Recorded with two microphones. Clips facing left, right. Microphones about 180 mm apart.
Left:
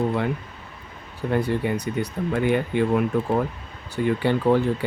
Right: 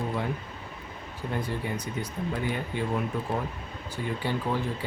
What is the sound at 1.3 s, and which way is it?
Speech, 70° left (ahead or behind).